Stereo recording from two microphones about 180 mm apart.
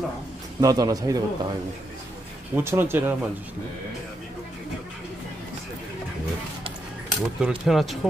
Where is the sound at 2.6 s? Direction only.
10° right (ahead or behind).